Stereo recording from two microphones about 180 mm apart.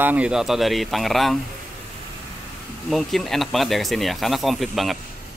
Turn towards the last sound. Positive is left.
turn(degrees=0)  # may be behind; listen again after turning